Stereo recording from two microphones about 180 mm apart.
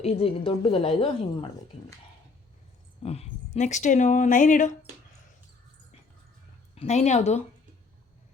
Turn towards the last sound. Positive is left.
turn(degrees=40)  # may be behind; listen again after turning